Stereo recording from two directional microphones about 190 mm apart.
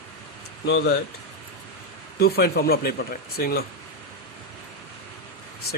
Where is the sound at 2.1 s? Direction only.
55° left (ahead or behind).